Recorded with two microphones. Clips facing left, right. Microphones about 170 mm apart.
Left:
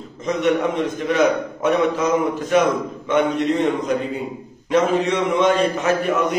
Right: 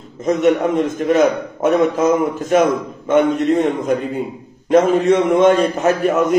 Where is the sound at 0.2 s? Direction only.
45° right (ahead or behind).